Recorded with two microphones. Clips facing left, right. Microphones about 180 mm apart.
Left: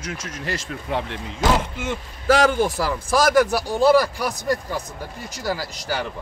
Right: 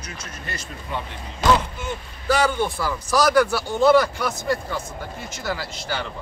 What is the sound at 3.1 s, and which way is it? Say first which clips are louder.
Speech: left 1 dB; 50° left (ahead or behind).